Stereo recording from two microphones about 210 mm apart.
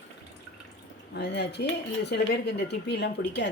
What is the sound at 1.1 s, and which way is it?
Speech, 55° left (ahead or behind).